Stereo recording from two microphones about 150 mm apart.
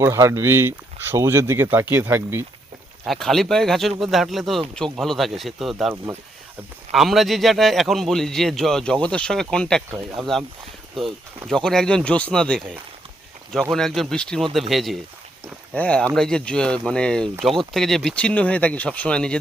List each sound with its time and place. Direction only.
0.0 s speech: 20° right (ahead or behind)
3.1 s a man's voice: centre (ahead or behind)
6.9 s a man's voice: centre (ahead or behind)
11.4 s a man's voice: 5° left (ahead or behind)